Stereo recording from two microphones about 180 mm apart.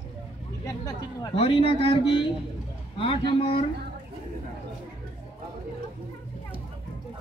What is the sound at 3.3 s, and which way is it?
Speech, 30° left (ahead or behind).